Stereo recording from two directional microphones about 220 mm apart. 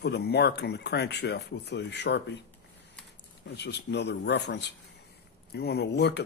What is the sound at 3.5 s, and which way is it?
A man's voice, 50° left (ahead or behind).